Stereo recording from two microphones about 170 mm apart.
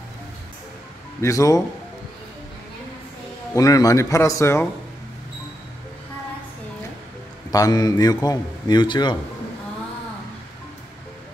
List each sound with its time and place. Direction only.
1.2 s a man's voice: 20° left (ahead or behind)
3.5 s speech: 20° left (ahead or behind)
7.5 s a man's voice: 20° left (ahead or behind)